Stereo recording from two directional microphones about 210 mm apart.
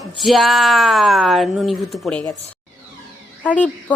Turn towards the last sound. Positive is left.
turn(degrees=5)  # may be behind; listen again after turning